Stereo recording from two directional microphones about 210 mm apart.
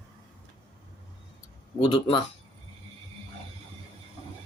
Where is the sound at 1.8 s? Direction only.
20° left (ahead or behind).